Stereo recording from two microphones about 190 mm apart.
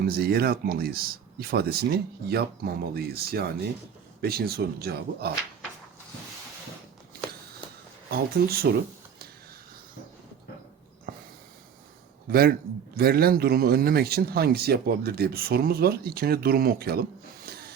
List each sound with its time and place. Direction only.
0.0 s speech: 55° right (ahead or behind)
8.1 s speech: 50° right (ahead or behind)
12.3 s speech: 55° right (ahead or behind)